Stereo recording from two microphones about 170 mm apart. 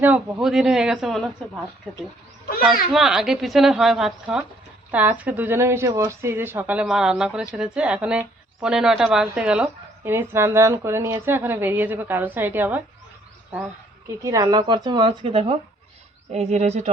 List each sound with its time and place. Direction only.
0.0 s speech: 5° right (ahead or behind)
14.2 s speech: 20° right (ahead or behind); by 16.9 s 40° right (ahead or behind)